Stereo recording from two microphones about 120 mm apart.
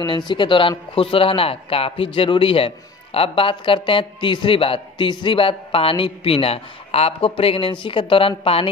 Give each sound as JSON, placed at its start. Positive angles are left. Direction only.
{"t": 0.3, "sound": "a man's voice", "side_deg": 45}